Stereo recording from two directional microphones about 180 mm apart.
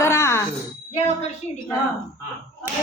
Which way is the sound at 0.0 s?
15° left (ahead or behind).